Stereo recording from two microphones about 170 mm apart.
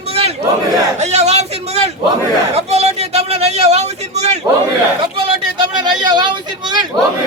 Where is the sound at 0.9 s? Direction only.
40° right (ahead or behind).